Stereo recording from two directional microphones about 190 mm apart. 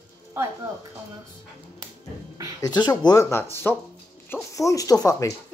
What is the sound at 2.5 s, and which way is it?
Speech, 20° left (ahead or behind).